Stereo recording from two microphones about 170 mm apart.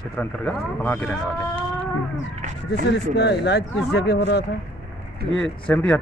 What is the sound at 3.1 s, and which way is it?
Speech, 85° left.